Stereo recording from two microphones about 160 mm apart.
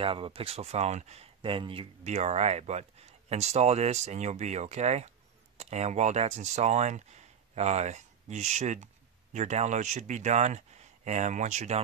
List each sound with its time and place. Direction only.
0.0 s speech: 35° right (ahead or behind)